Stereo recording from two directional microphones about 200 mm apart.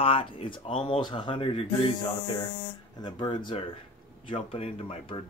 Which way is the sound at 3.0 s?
20° left (ahead or behind).